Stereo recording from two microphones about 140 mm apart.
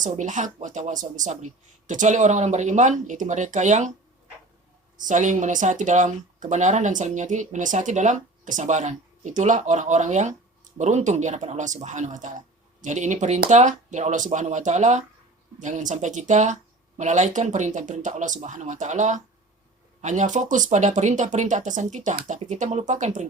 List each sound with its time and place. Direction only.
0.0 s speech: 65° right (ahead or behind)
4.9 s speech: 65° right (ahead or behind)